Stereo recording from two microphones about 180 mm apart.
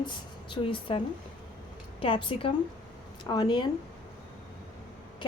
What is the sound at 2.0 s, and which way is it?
Speech, 30° left (ahead or behind).